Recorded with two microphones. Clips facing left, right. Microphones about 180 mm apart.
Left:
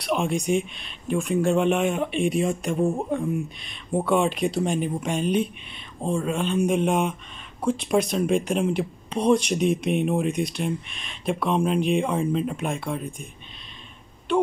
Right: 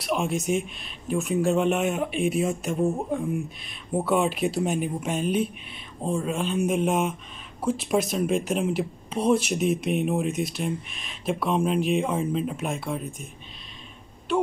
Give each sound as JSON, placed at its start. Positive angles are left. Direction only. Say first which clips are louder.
{"t": 0.0, "sound": "speech", "louder": "left 2 dB", "side_deg": 0}
{"t": 14.3, "sound": "speech", "louder": "left 2 dB", "side_deg": 0}